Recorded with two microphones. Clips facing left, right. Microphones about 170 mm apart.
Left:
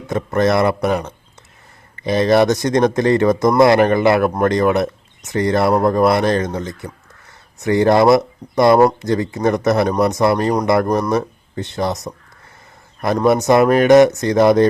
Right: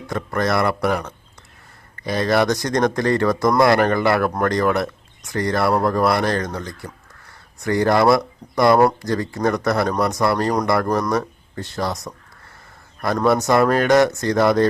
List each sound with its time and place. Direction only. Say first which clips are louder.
0.1 s speech: left 5 dB; 20° left (ahead or behind)
13.1 s speech: left 4 dB; 20° left (ahead or behind)